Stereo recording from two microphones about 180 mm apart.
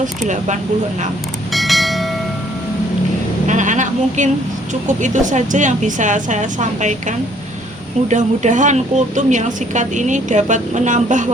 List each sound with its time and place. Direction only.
0.3 s speech: 40° right (ahead or behind)
1.5 s train: centre (ahead or behind)
3.4 s a sound: 45° right (ahead or behind)
4.7 s a woman's voice: 40° right (ahead or behind)
8.0 s a woman's voice: 40° right (ahead or behind)